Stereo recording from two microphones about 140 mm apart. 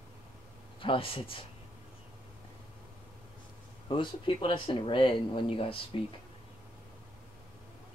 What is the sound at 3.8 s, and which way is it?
Speech, 35° left (ahead or behind).